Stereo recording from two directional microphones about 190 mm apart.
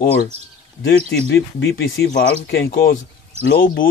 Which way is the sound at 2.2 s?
55° left (ahead or behind).